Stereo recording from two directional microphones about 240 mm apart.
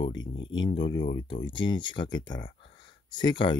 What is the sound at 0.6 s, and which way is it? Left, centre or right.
Speech, left.